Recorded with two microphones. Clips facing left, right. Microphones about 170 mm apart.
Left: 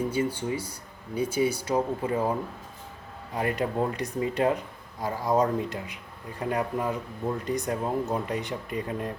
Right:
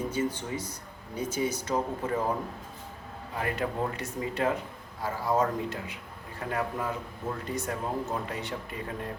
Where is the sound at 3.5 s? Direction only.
15° left (ahead or behind).